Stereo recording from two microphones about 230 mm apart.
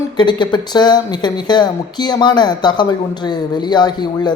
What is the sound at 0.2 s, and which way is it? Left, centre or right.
Speech, centre.